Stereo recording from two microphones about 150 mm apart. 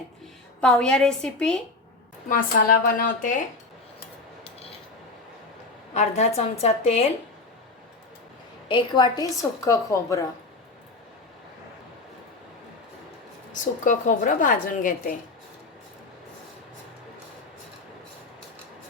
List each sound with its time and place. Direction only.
0.6 s a woman's voice: 5° left (ahead or behind)
2.3 s a woman's voice: 70° left (ahead or behind)
5.9 s a woman's voice: 50° left (ahead or behind)
8.6 s a woman's voice: 30° left (ahead or behind)
13.5 s a woman's voice: 60° left (ahead or behind)